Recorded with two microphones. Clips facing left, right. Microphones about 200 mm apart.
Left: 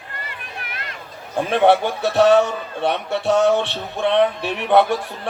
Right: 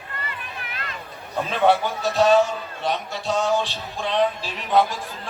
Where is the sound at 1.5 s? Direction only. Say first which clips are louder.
Left 4 dB; 60° left (ahead or behind).